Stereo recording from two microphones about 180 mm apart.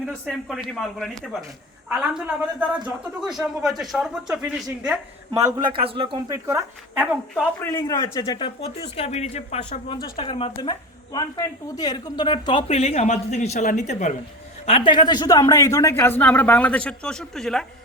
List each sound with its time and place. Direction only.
0.3 s speech: centre (ahead or behind)
5.3 s a man's voice: 20° right (ahead or behind)
6.3 s speech: 15° right (ahead or behind)
7.6 s speech: 20° left (ahead or behind)
12.6 s speech: 35° left (ahead or behind)
14.7 s speech: 25° left (ahead or behind); by 17.7 s centre (ahead or behind)